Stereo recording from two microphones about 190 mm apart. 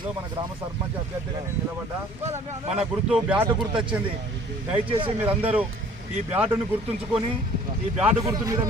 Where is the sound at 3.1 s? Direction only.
10° right (ahead or behind).